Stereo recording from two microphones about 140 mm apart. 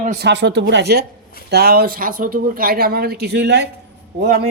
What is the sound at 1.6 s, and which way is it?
Speech, 90° right.